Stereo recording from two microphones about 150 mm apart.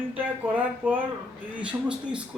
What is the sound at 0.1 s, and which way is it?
A man's voice, 10° right (ahead or behind).